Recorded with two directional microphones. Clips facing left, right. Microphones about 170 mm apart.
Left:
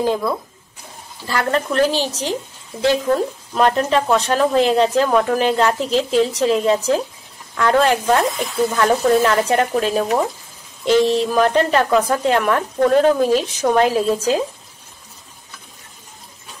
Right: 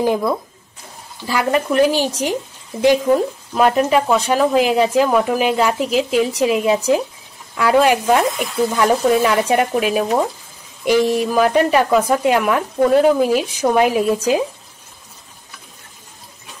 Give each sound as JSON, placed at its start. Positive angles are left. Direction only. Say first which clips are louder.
{"t": 1.2, "sound": "speech", "louder": "right 2 dB", "side_deg": -10}